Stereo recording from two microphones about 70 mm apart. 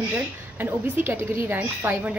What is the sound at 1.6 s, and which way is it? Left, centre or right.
Speech, right.